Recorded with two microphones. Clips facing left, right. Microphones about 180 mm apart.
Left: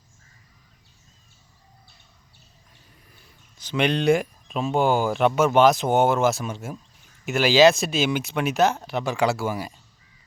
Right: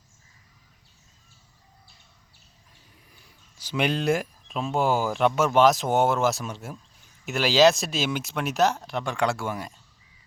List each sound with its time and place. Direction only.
3.6 s speech: 5° right (ahead or behind)